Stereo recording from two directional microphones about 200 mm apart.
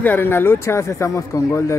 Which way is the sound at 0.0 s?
10° left (ahead or behind).